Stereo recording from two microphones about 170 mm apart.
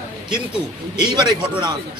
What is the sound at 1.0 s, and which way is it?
Speech, 25° right (ahead or behind).